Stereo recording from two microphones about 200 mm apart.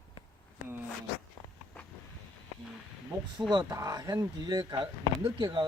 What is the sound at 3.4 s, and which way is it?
Speech, 20° right (ahead or behind).